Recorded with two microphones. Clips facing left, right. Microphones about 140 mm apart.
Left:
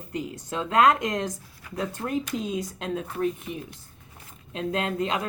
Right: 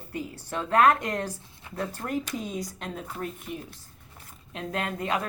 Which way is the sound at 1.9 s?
20° left (ahead or behind).